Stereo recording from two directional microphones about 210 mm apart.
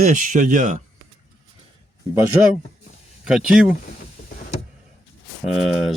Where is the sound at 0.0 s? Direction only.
40° right (ahead or behind).